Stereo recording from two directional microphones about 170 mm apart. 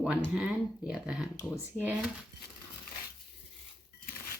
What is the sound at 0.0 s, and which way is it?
Speech, 5° right (ahead or behind).